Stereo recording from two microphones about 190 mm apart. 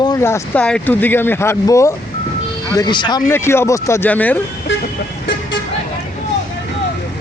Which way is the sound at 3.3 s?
15° left (ahead or behind).